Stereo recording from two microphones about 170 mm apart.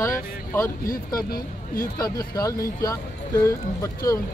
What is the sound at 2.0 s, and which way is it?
Speech, 20° left (ahead or behind).